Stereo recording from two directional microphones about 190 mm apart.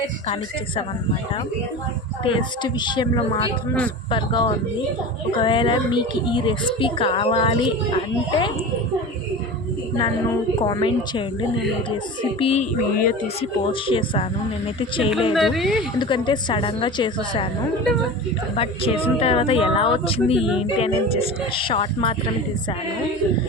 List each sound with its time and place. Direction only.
2.2 s a woman's voice: 25° left (ahead or behind)
10.6 s a woman's voice: 25° left (ahead or behind)
12.9 s speech: 50° left (ahead or behind)
13.2 s a woman's voice: 30° left (ahead or behind)
15.3 s speech: centre (ahead or behind)
16.0 s a woman's voice: 25° left (ahead or behind)
18.5 s a woman's voice: 30° left (ahead or behind)